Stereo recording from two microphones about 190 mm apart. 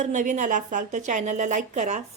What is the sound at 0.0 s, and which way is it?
A woman's voice, 40° right (ahead or behind).